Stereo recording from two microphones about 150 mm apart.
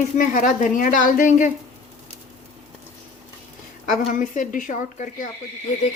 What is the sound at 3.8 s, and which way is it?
A woman's voice, 55° left (ahead or behind).